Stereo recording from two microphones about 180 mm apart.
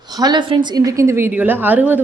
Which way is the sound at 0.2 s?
25° right (ahead or behind).